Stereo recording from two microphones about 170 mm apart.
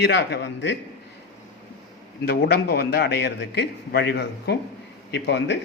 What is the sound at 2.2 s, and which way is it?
A man's voice, 65° left (ahead or behind).